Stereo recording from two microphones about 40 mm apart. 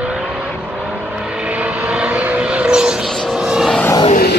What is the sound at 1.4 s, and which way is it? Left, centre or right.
Vehicle, right.